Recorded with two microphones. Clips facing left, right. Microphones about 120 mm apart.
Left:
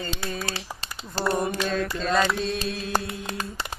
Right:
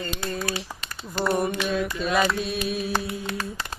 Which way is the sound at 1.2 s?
35° left (ahead or behind).